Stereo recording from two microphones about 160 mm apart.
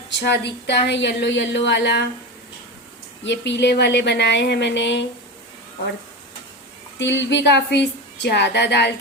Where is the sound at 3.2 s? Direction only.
90° left.